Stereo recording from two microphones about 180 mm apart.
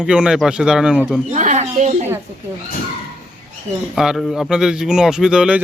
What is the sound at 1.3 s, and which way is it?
Speech, 40° right (ahead or behind).